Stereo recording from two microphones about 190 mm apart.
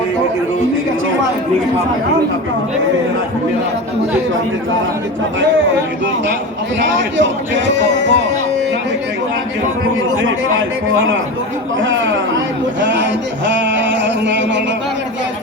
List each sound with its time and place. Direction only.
7.2 s music: 75° right (ahead or behind)
11.8 s speech: 80° right
12.8 s music: 70° right (ahead or behind)